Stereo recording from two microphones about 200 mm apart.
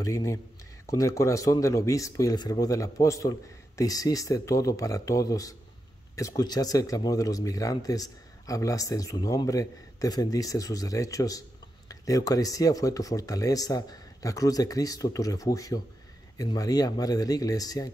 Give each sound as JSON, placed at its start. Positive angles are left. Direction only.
{"t": 0.0, "sound": "speech", "side_deg": 15}